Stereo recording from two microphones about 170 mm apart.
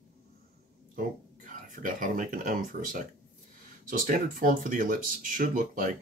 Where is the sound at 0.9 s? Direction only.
50° right (ahead or behind).